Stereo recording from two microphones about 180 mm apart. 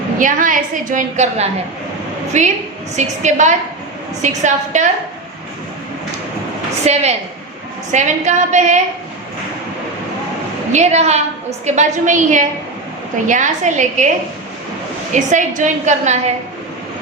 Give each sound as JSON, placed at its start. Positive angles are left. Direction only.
{"t": 0.2, "sound": "a woman's voice", "side_deg": -45}
{"t": 6.8, "sound": "a woman's voice", "side_deg": -35}
{"t": 10.7, "sound": "a woman's voice", "side_deg": -40}
{"t": 15.1, "sound": "a woman's voice", "side_deg": -45}